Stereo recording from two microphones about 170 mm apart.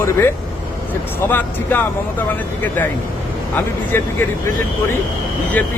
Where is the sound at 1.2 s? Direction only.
10° left (ahead or behind).